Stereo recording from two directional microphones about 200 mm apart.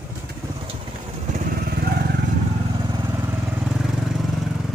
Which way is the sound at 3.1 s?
5° right (ahead or behind).